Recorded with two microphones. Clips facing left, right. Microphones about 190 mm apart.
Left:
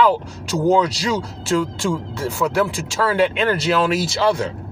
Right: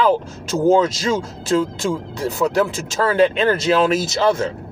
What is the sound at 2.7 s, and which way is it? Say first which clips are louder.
Speech: right 1 dB; 45° right (ahead or behind).